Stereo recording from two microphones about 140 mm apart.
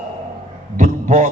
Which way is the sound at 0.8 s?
60° right (ahead or behind).